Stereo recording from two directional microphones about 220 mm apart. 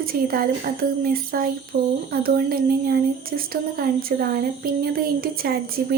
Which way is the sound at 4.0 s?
40° right (ahead or behind).